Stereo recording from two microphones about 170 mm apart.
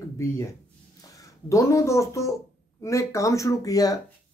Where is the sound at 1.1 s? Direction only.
20° left (ahead or behind).